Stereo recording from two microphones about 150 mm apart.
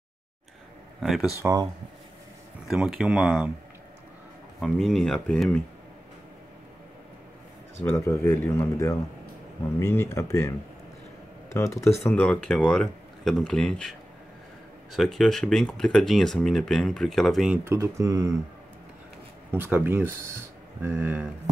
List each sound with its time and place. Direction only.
1.0 s speech: centre (ahead or behind)
1.4 s speech: 20° right (ahead or behind)
2.7 s speech: 5° right (ahead or behind)
4.6 s speech: centre (ahead or behind)
7.9 s speech: 20° left (ahead or behind)
11.5 s speech: 20° left (ahead or behind)
12.0 s speech: 5° left (ahead or behind)
17.6 s speech: 20° right (ahead or behind)
19.5 s speech: 15° right (ahead or behind)